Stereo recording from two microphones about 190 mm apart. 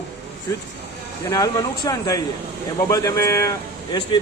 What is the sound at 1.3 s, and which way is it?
A man's voice, 20° left (ahead or behind).